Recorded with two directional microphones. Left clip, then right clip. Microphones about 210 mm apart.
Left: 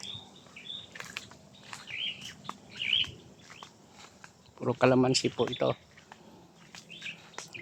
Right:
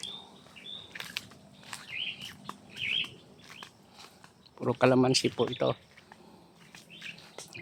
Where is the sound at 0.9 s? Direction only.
15° right (ahead or behind).